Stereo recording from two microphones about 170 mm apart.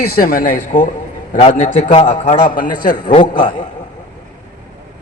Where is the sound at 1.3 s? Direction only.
40° left (ahead or behind).